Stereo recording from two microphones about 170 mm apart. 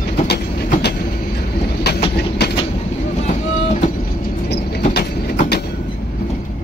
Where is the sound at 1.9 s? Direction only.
75° left (ahead or behind).